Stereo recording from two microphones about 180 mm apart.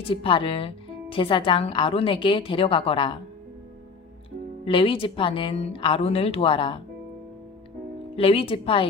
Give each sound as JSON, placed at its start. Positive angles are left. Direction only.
{"t": 0.1, "sound": "a woman's voice", "side_deg": 30}
{"t": 4.6, "sound": "speech", "side_deg": 30}
{"t": 8.1, "sound": "speech", "side_deg": 30}